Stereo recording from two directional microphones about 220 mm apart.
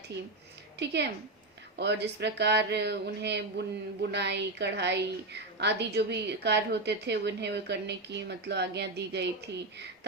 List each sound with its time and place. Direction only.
0.8 s speech: 50° right (ahead or behind)